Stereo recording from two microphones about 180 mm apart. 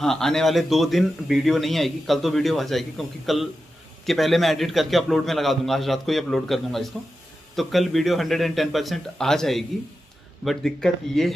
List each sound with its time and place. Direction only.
0.0 s speech: 5° left (ahead or behind)